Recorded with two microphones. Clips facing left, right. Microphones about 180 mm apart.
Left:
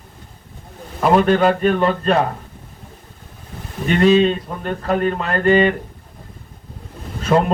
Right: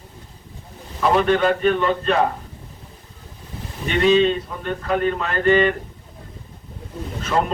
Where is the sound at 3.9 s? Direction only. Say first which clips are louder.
Left 3 dB; 40° left (ahead or behind).